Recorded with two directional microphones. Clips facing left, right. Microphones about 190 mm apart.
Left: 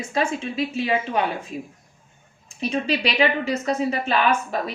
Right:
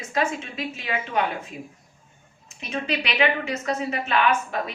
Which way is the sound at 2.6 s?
35° left (ahead or behind).